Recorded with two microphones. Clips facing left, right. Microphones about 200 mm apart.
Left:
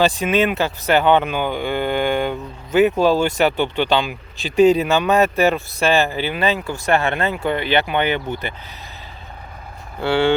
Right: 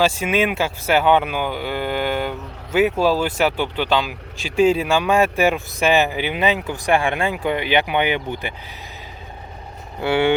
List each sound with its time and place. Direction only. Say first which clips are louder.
0.0 s speech: left 2 dB; 10° right (ahead or behind)
10.0 s speech: left 1 dB; 20° right (ahead or behind)